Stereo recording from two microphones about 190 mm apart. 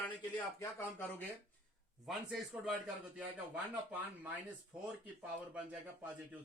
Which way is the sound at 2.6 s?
5° right (ahead or behind).